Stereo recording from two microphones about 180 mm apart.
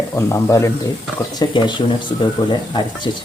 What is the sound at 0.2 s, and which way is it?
Speech, 15° left (ahead or behind).